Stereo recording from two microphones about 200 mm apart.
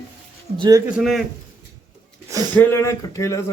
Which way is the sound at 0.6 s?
20° right (ahead or behind).